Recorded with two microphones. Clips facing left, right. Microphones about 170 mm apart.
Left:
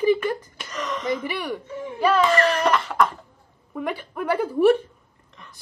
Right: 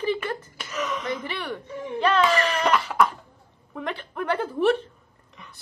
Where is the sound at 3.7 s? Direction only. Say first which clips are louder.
Left 3 dB; 10° left (ahead or behind).